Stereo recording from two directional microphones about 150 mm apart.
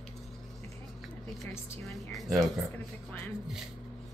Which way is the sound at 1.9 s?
Centre (ahead or behind).